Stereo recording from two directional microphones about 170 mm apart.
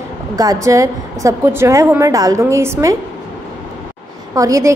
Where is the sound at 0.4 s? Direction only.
20° right (ahead or behind).